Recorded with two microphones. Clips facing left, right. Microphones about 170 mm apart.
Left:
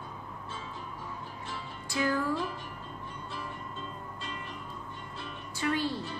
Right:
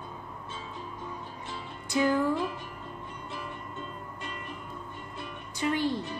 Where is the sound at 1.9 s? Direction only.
20° right (ahead or behind).